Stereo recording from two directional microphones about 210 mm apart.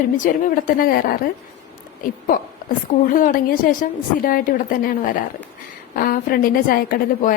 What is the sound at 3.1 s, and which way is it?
A woman's voice, 40° left (ahead or behind).